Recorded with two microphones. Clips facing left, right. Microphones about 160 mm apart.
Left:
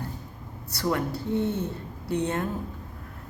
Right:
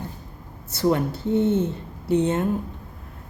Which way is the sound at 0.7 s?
25° right (ahead or behind).